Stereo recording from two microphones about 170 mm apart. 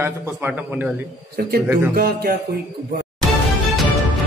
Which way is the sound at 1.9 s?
65° right (ahead or behind).